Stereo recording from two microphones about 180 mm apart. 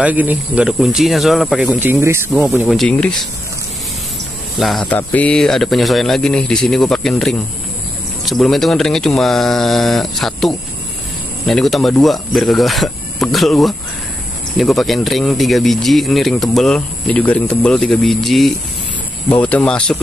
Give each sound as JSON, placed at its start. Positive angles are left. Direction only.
{"t": 0.0, "sound": "speech", "side_deg": -10}
{"t": 2.7, "sound": "speech", "side_deg": 5}
{"t": 4.6, "sound": "speech", "side_deg": 0}